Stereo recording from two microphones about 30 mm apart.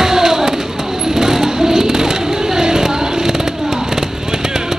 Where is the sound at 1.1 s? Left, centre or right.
Centre.